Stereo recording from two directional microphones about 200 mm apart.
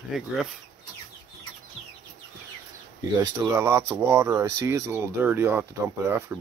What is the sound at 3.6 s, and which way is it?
Speech, 15° right (ahead or behind).